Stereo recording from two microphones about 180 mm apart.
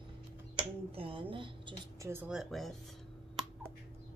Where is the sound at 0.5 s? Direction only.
30° right (ahead or behind).